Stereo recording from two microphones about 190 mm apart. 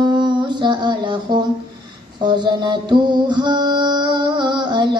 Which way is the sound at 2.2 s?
25° right (ahead or behind).